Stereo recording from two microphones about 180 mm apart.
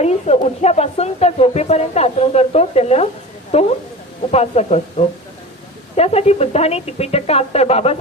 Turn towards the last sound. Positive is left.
turn(degrees=35)  # may be behind; listen again after turning